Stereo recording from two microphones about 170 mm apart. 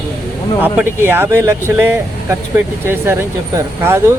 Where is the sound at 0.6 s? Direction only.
10° right (ahead or behind).